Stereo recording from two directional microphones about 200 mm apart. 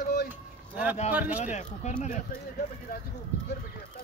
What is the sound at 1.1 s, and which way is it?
Speech, 10° right (ahead or behind).